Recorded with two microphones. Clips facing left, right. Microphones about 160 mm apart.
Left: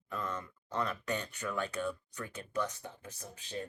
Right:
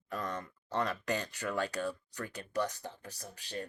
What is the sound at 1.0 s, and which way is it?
Speech, 35° right (ahead or behind).